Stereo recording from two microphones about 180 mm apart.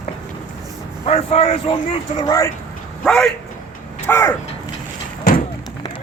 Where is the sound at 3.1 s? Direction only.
5° left (ahead or behind).